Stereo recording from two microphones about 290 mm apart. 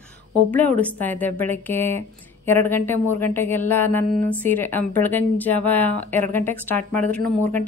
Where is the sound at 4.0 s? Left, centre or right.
Right.